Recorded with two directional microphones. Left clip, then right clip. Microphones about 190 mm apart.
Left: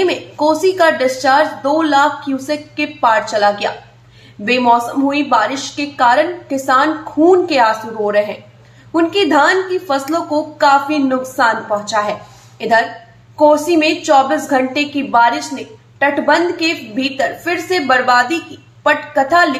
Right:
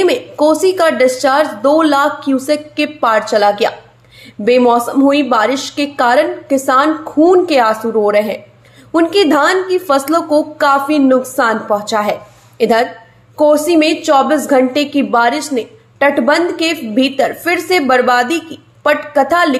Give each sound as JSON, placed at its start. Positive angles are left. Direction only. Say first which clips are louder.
{"t": 0.0, "sound": "a woman's voice", "louder": "right 3 dB", "side_deg": -35}